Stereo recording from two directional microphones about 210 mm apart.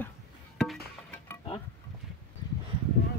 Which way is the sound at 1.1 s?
10° left (ahead or behind).